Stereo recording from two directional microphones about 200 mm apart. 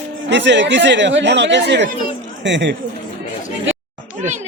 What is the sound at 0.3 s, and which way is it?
Speech, 65° right (ahead or behind).